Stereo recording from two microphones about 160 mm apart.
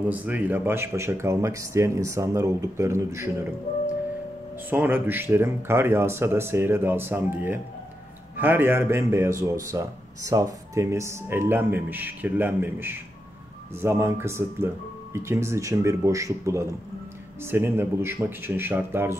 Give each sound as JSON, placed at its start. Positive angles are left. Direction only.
{"t": 0.1, "sound": "speech", "side_deg": -10}
{"t": 4.6, "sound": "speech", "side_deg": -10}